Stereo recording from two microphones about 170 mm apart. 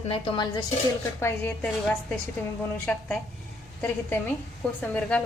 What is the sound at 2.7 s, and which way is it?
A woman's voice, 5° left (ahead or behind).